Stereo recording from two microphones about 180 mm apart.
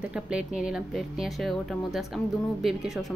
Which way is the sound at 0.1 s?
5° right (ahead or behind).